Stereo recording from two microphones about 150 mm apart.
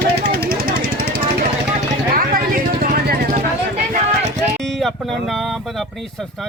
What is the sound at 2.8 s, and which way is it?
Vehicle, 65° right (ahead or behind).